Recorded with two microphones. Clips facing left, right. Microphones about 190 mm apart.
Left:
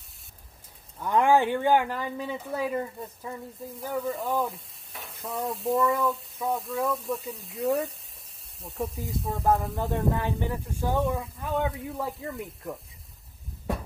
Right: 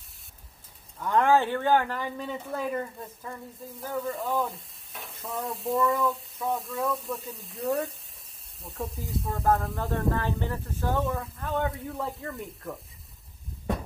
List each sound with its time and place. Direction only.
0.9 s speech: 10° left (ahead or behind)
3.8 s frying: centre (ahead or behind)
9.8 s speech: 20° left (ahead or behind)
11.1 s frying: 5° left (ahead or behind)